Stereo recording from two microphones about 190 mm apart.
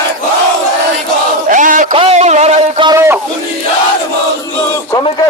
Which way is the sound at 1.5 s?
45° right (ahead or behind).